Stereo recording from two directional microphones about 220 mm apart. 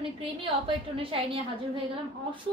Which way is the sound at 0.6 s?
25° right (ahead or behind).